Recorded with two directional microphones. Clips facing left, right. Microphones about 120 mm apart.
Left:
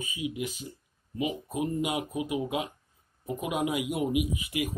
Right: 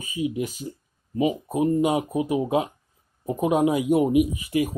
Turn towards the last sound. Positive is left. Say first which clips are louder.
# right 7 dB
turn(degrees=-40)  # may be behind; listen again after turning